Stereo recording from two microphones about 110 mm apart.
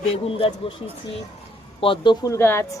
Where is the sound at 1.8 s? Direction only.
55° left (ahead or behind).